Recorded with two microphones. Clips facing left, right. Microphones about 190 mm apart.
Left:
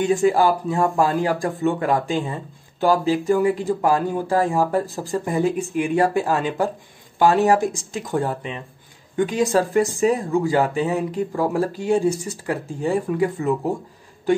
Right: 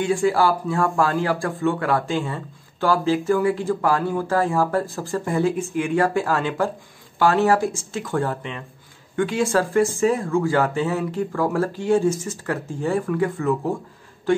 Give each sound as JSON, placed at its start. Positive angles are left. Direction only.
{"t": 0.0, "sound": "speech", "side_deg": 20}